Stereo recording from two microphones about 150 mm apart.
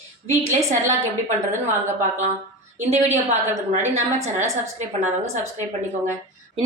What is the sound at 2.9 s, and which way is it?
A woman's voice, 50° right (ahead or behind).